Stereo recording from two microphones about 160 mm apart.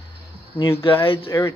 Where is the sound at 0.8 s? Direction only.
35° left (ahead or behind).